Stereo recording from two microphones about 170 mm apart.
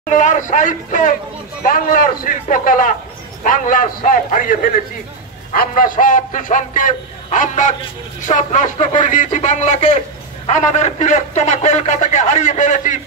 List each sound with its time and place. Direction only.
0.1 s a man's voice: 45° left (ahead or behind)